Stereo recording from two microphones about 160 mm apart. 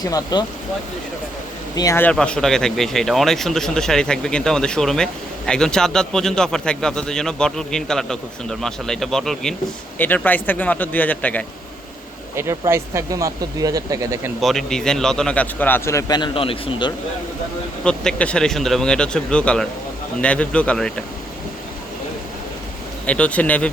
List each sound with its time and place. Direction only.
0.0 s speech: 20° left (ahead or behind)
1.7 s a man's voice: 20° left (ahead or behind)
12.4 s speech: 15° right (ahead or behind)
14.4 s a man's voice: 5° left (ahead or behind); by 16.9 s 30° left (ahead or behind)
17.8 s a man's voice: 5° left (ahead or behind)
23.0 s a man's voice: 10° left (ahead or behind)